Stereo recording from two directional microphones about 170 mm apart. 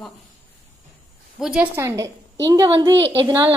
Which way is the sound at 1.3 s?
5° right (ahead or behind).